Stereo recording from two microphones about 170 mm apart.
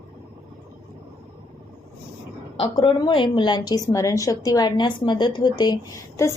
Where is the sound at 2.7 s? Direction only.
25° left (ahead or behind).